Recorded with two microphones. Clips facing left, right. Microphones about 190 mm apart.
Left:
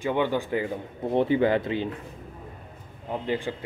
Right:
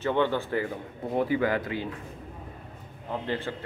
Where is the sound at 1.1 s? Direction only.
25° left (ahead or behind).